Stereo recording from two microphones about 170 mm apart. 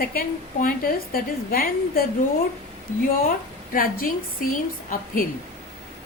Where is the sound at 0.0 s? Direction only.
60° left (ahead or behind).